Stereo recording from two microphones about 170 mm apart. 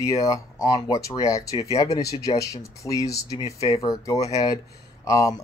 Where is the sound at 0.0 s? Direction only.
20° left (ahead or behind).